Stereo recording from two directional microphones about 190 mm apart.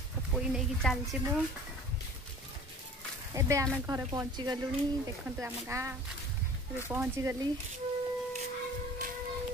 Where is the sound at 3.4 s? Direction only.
15° right (ahead or behind).